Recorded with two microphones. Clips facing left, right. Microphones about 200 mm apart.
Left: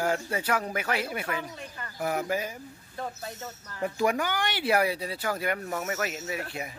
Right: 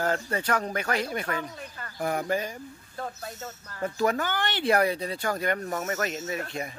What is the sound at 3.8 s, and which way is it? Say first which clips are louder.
Speech: even; 15° left (ahead or behind).